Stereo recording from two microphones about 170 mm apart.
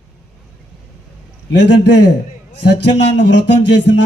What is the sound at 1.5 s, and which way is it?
Speech, 90° left.